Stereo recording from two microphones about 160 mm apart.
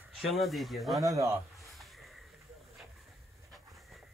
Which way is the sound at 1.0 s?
20° right (ahead or behind).